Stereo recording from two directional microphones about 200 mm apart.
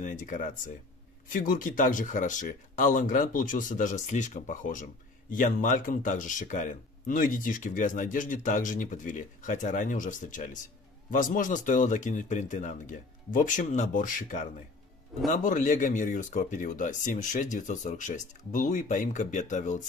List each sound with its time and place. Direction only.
0.0 s speech: 40° left (ahead or behind)